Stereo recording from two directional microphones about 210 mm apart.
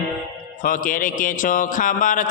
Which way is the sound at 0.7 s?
40° left (ahead or behind).